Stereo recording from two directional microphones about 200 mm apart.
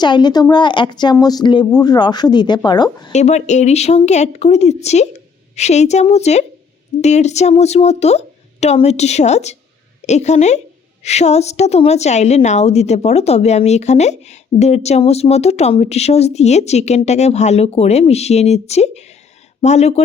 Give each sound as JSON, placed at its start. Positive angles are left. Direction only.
{"t": 0.0, "sound": "a woman's voice", "side_deg": 20}
{"t": 3.1, "sound": "a woman's voice", "side_deg": 35}